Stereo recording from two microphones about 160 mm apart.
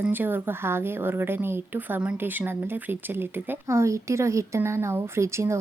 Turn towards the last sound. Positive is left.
turn(degrees=-15)  # may be behind; listen again after turning